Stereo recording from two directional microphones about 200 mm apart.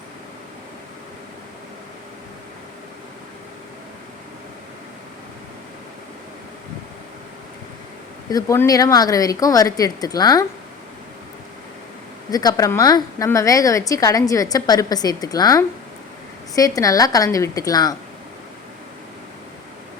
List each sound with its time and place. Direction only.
8.3 s a woman's voice: 15° left (ahead or behind)
12.3 s a woman's voice: 20° left (ahead or behind)